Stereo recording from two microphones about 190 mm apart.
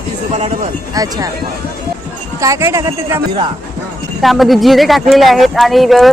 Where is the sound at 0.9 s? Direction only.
20° right (ahead or behind).